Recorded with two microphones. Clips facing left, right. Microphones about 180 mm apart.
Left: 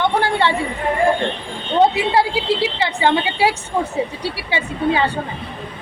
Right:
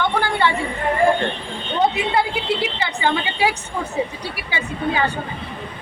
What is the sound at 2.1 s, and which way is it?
A woman's voice, 30° left (ahead or behind).